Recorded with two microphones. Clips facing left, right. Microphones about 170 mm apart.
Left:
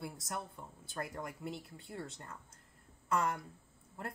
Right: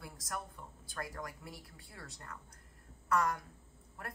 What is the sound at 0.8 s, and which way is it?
A woman's voice, 25° left (ahead or behind).